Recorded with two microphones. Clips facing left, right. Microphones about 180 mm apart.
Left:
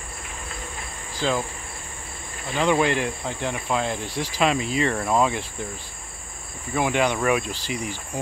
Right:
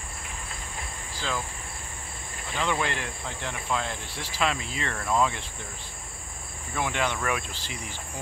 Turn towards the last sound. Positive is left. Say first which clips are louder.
# left 9 dB
turn(degrees=15)  # may be behind; listen again after turning